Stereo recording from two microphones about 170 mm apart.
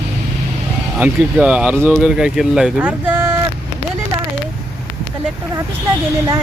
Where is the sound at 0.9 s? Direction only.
10° right (ahead or behind).